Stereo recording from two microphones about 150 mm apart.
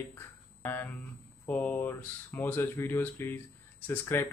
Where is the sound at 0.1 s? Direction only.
15° left (ahead or behind).